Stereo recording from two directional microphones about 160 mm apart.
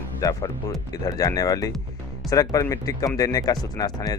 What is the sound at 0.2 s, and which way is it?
Speech, 25° left (ahead or behind).